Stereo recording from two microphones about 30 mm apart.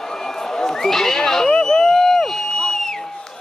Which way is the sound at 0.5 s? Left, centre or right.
Centre.